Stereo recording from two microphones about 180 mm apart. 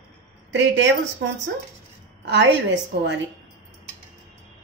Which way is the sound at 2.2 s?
80° right.